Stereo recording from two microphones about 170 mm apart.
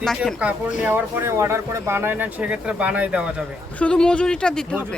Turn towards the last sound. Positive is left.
turn(degrees=5)  # may be behind; listen again after turning